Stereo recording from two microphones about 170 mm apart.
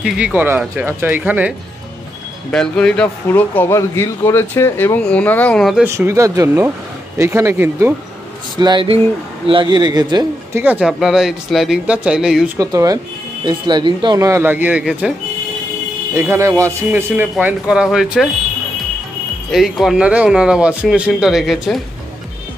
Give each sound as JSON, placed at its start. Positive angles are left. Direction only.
{"t": 0.0, "sound": "speech", "side_deg": -10}
{"t": 2.5, "sound": "speech", "side_deg": 5}
{"t": 5.9, "sound": "speech", "side_deg": -15}
{"t": 8.5, "sound": "speech", "side_deg": -25}
{"t": 10.6, "sound": "a man's voice", "side_deg": -5}
{"t": 12.5, "sound": "speech", "side_deg": -20}
{"t": 16.2, "sound": "speech", "side_deg": -15}
{"t": 19.5, "sound": "a man's voice", "side_deg": 0}